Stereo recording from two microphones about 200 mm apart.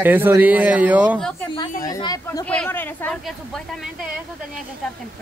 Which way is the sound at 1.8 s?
20° left (ahead or behind).